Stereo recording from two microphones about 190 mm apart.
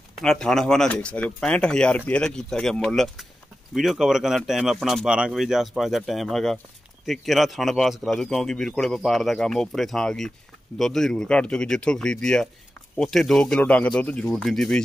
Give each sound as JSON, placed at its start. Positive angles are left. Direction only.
{"t": 0.2, "sound": "speech", "side_deg": 5}